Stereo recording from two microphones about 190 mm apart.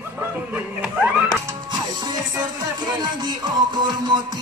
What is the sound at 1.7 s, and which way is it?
Music, 20° right (ahead or behind).